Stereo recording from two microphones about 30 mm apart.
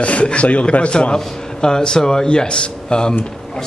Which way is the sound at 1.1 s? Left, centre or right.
Left.